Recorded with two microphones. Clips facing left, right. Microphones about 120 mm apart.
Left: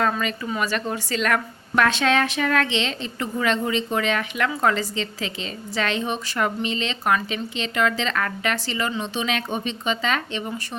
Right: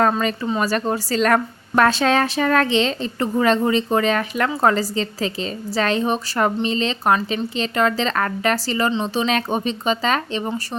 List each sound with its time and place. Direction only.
0.0 s a woman's voice: 40° right (ahead or behind)